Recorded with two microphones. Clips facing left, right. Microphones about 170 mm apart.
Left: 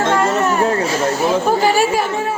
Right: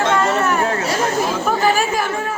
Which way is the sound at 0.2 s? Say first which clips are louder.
Left 2 dB; 20° left (ahead or behind).